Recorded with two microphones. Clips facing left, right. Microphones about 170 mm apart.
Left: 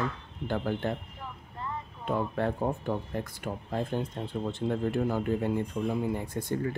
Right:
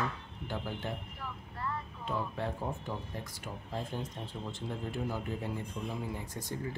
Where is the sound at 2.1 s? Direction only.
60° left (ahead or behind).